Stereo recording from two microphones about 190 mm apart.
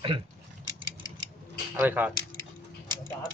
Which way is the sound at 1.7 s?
10° right (ahead or behind).